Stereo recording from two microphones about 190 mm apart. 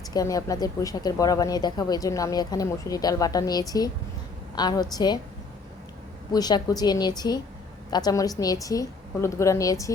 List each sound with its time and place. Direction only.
0.1 s speech: 20° left (ahead or behind)
6.3 s a woman's voice: 20° left (ahead or behind)